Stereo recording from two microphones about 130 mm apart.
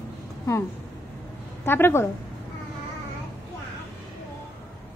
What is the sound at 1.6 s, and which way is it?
Speech, 20° left (ahead or behind).